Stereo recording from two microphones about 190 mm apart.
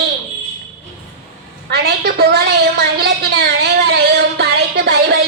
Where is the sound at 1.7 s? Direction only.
55° right (ahead or behind).